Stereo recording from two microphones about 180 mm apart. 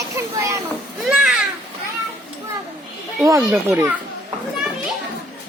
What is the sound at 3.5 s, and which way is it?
Speech, 10° right (ahead or behind).